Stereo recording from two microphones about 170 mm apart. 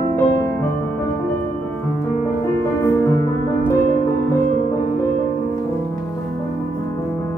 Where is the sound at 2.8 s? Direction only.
15° left (ahead or behind).